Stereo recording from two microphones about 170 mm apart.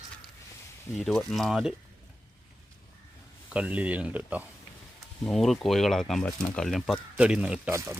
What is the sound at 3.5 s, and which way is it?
Speech, 5° right (ahead or behind).